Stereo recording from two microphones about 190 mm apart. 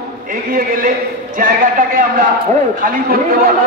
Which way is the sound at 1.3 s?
45° right (ahead or behind).